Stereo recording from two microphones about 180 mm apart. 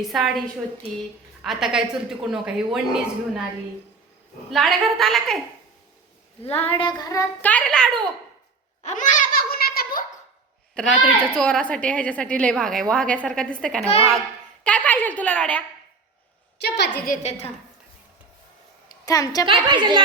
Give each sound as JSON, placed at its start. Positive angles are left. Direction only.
{"t": 0.0, "sound": "a woman's voice", "side_deg": 0}
{"t": 4.5, "sound": "a woman's voice", "side_deg": 0}
{"t": 6.4, "sound": "a woman's voice", "side_deg": 30}
{"t": 8.8, "sound": "a sound", "side_deg": 45}
{"t": 10.8, "sound": "a woman's voice", "side_deg": -5}
{"t": 16.6, "sound": "a woman's voice", "side_deg": 70}
{"t": 17.1, "sound": "a woman's voice", "side_deg": 35}
{"t": 19.0, "sound": "a woman's voice", "side_deg": 20}
{"t": 19.6, "sound": "speech", "side_deg": -25}